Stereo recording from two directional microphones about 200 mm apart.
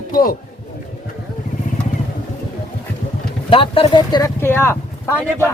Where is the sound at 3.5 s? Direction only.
25° left (ahead or behind); by 4.8 s 10° left (ahead or behind).